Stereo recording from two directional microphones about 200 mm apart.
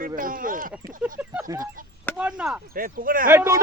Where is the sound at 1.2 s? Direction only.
5° right (ahead or behind).